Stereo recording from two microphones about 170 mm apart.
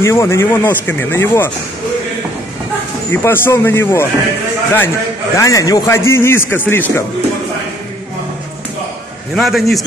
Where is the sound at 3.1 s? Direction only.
15° left (ahead or behind).